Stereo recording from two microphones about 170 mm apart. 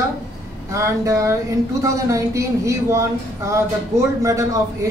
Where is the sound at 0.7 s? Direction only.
20° right (ahead or behind).